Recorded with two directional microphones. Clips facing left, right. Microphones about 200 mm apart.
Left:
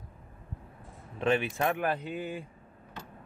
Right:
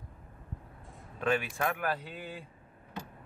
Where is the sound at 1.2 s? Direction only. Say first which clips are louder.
Left 3 dB; 25° left (ahead or behind).